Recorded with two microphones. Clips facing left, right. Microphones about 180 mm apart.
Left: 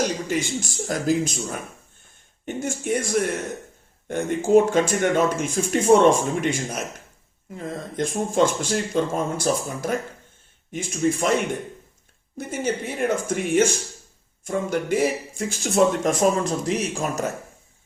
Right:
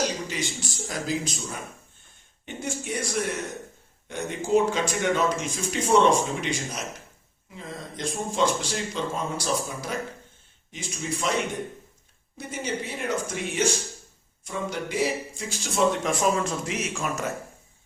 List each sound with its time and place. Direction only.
0.0 s speech: 50° left (ahead or behind)
12.4 s speech: 50° left (ahead or behind)